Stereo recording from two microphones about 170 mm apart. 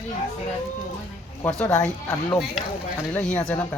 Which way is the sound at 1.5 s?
5° left (ahead or behind).